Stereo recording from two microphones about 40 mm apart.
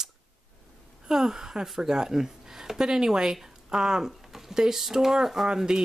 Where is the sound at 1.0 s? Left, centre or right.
Centre.